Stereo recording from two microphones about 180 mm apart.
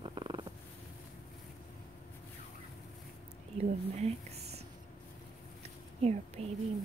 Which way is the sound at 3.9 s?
35° right (ahead or behind).